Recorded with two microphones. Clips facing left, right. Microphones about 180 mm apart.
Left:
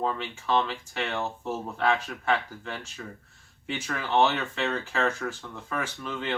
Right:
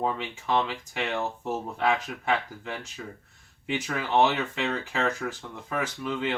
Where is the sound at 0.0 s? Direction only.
15° right (ahead or behind).